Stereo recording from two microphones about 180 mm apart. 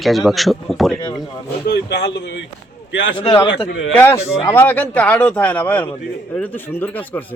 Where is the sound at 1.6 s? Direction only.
70° left (ahead or behind).